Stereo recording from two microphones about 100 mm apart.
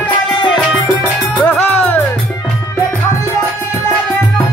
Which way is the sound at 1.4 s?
15° left (ahead or behind).